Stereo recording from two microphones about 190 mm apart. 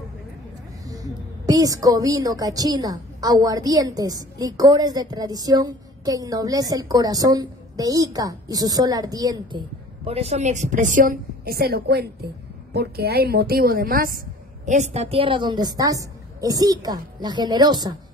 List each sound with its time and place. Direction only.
0.8 s speech: 20° right (ahead or behind)
10.0 s a woman's voice: 35° right (ahead or behind); by 14.2 s 50° right (ahead or behind)
14.7 s speech: 35° right (ahead or behind)